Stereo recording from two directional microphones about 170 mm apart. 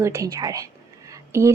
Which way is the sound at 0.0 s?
20° right (ahead or behind).